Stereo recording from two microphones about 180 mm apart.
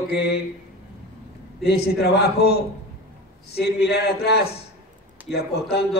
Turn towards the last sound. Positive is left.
turn(degrees=65)  # may be behind; listen again after turning